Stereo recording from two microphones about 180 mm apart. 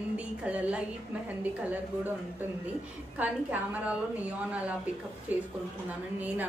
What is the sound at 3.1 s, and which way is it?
Speech, 10° right (ahead or behind).